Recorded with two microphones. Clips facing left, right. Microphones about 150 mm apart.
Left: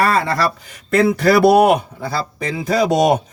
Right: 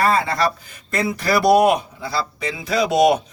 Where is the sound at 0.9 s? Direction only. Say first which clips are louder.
Left 7 dB; 60° left (ahead or behind).